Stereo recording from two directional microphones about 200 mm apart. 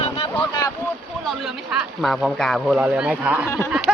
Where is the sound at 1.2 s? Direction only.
Centre (ahead or behind).